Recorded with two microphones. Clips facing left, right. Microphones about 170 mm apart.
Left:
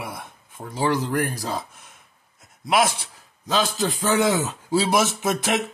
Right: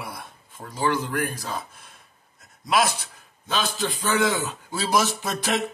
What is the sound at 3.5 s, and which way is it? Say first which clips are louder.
Speech: left 4 dB; 40° left (ahead or behind).